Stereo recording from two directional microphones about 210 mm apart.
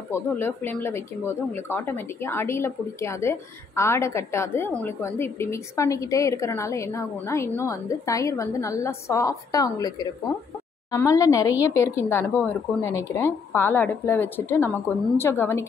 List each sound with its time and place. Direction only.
0.1 s speech: 10° left (ahead or behind)